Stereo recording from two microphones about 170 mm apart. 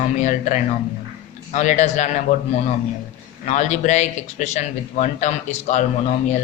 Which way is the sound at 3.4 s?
45° left (ahead or behind).